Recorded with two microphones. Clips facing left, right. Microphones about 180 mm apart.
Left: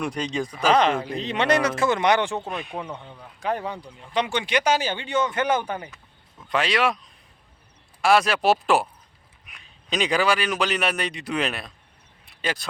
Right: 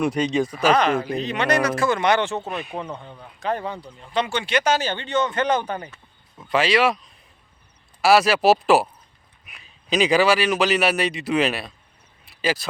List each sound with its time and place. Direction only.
0.0 s a man's voice: 5° right (ahead or behind)
0.7 s speech: 25° left (ahead or behind)
2.4 s a man's voice: 5° right (ahead or behind)
3.4 s speech: 10° left (ahead or behind)
6.4 s a man's voice: centre (ahead or behind)
12.2 s a sound: 5° right (ahead or behind)